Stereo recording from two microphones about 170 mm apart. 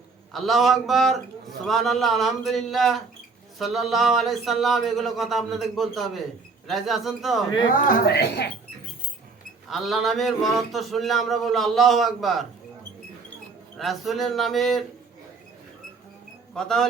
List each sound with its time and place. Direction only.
0.3 s speech: centre (ahead or behind)
7.7 s a woman's voice: 55° left (ahead or behind); by 8.4 s 75° left (ahead or behind)
9.6 s speech: centre (ahead or behind)
13.7 s speech: centre (ahead or behind)
16.6 s speech: 5° left (ahead or behind)